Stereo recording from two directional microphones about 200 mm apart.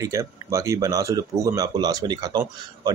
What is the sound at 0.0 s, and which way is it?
Speech, 15° right (ahead or behind).